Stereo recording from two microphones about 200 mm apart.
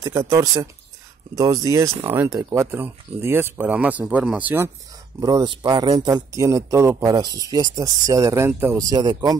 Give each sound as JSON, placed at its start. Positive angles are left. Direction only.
{"t": 0.0, "sound": "speech", "side_deg": -15}
{"t": 5.2, "sound": "speech", "side_deg": -20}